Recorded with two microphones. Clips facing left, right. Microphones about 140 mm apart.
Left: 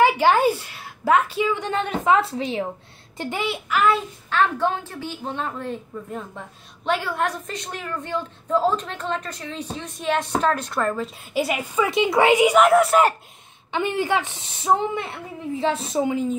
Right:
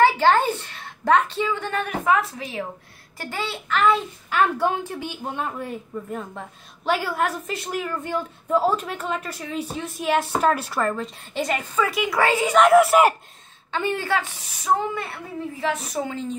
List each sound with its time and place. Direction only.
0.0 s a woman's voice: 10° left (ahead or behind)
4.3 s a woman's voice: 10° right (ahead or behind); by 12.5 s 15° left (ahead or behind)
12.5 s a woman's voice: centre (ahead or behind)
13.7 s a woman's voice: 15° left (ahead or behind)